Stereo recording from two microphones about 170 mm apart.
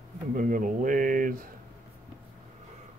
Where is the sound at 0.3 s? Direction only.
55° right (ahead or behind).